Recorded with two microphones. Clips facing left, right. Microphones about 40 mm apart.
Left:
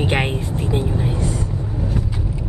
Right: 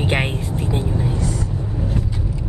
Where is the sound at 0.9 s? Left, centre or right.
Left.